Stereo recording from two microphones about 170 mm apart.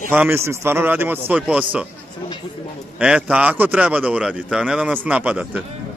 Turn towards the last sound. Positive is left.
turn(degrees=-5)  # may be behind; listen again after turning